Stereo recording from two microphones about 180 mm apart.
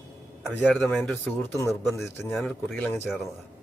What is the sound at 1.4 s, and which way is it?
Speech, 15° left (ahead or behind).